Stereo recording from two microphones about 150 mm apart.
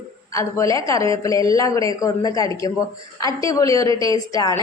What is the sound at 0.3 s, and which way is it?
A woman's voice, 20° left (ahead or behind).